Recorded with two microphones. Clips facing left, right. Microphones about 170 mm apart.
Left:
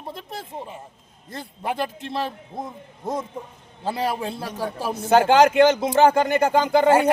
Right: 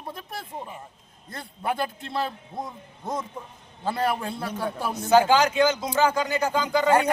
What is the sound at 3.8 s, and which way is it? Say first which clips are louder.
A man's voice: left 1 dB; 25° left (ahead or behind).